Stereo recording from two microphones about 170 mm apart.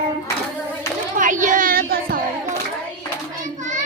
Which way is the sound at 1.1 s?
50° right (ahead or behind).